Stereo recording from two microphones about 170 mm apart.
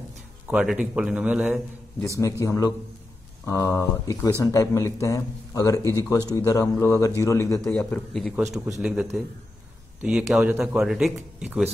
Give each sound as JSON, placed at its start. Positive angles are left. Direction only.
{"t": 0.5, "sound": "a man's voice", "side_deg": -5}
{"t": 2.0, "sound": "speech", "side_deg": 20}
{"t": 7.6, "sound": "speech", "side_deg": 5}
{"t": 10.0, "sound": "speech", "side_deg": -5}